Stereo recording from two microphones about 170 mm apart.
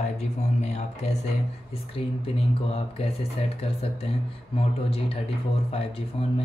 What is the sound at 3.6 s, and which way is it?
Speech, 35° left (ahead or behind).